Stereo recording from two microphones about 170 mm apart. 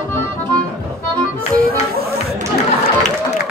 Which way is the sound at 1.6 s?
60° right (ahead or behind).